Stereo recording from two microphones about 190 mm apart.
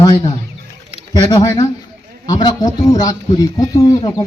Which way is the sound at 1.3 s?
20° left (ahead or behind).